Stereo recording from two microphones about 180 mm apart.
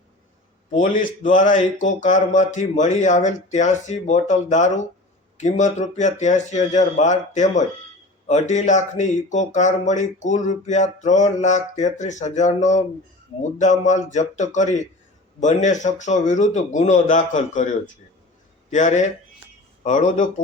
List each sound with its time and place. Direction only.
0.7 s a man's voice: 45° left (ahead or behind)